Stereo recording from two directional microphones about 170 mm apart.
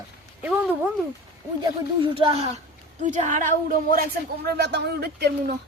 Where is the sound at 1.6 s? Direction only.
30° right (ahead or behind).